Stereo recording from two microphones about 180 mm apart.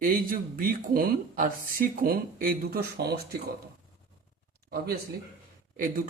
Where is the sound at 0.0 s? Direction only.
50° right (ahead or behind).